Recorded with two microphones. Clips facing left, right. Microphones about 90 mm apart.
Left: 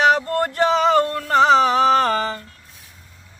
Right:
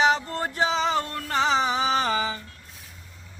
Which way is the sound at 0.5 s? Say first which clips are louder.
Left 7 dB; 60° left (ahead or behind).